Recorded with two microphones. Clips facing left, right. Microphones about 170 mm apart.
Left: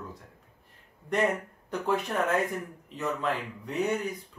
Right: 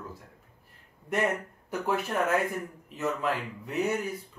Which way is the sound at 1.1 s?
5° right (ahead or behind).